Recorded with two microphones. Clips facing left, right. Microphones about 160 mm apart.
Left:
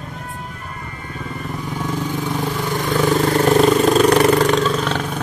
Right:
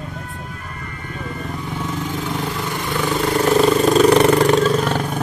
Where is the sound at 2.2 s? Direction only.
15° left (ahead or behind).